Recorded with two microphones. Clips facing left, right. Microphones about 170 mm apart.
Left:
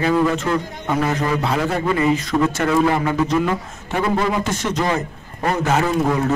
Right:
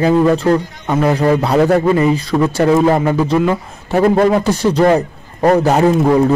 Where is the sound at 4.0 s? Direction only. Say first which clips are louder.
Right 8 dB; 50° right (ahead or behind).